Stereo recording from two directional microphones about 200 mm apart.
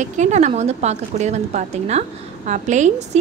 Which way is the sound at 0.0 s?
35° right (ahead or behind).